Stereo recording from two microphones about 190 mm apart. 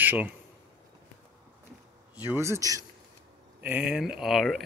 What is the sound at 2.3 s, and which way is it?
Speech, 15° right (ahead or behind).